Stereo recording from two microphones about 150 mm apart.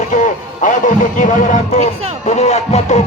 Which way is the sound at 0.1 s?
55° left (ahead or behind).